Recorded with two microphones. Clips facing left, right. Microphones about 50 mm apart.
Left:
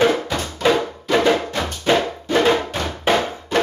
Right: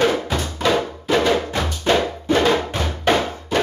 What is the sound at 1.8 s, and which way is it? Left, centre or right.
Music, centre.